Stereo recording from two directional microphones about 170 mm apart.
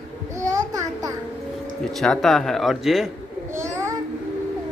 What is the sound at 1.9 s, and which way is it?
Speech, centre (ahead or behind).